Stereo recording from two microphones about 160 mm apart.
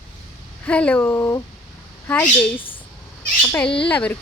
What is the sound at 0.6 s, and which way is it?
Speech, 10° left (ahead or behind).